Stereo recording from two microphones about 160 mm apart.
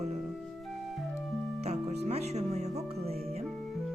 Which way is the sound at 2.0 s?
40° right (ahead or behind).